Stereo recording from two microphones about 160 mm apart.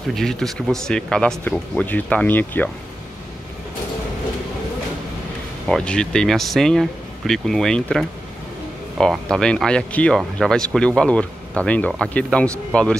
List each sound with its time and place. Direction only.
0.1 s speech: centre (ahead or behind)
5.7 s speech: 5° left (ahead or behind)